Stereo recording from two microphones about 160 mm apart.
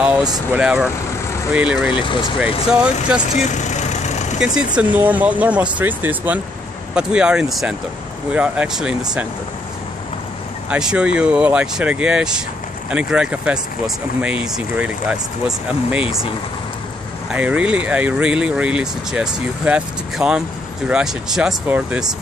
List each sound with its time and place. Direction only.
0.5 s speech: 5° right (ahead or behind)
3.3 s vehicle: 45° left (ahead or behind)
4.4 s speech: 5° right (ahead or behind)
10.7 s speech: 5° right (ahead or behind)
17.3 s speech: 5° right (ahead or behind)